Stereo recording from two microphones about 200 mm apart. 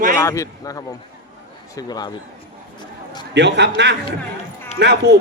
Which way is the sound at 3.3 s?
60° right (ahead or behind).